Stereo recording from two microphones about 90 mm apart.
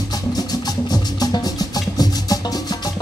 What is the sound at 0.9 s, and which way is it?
Music, 50° left (ahead or behind).